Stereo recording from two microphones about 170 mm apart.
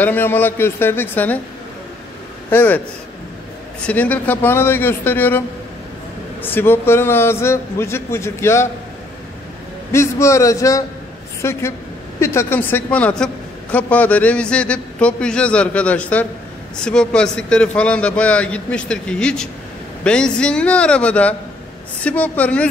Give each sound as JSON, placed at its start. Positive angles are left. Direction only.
{"t": 0.0, "sound": "a woman's voice", "side_deg": 10}
{"t": 2.5, "sound": "a woman's voice", "side_deg": 10}
{"t": 3.8, "sound": "a woman's voice", "side_deg": 10}
{"t": 6.4, "sound": "a woman's voice", "side_deg": 10}
{"t": 9.9, "sound": "a woman's voice", "side_deg": 15}